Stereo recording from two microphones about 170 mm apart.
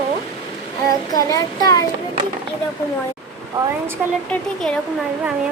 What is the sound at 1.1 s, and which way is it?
Child singing, 20° left (ahead or behind).